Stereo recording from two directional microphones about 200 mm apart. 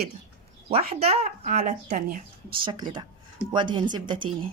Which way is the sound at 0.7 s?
30° right (ahead or behind).